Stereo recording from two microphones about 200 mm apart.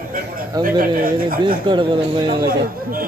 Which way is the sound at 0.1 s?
45° right (ahead or behind).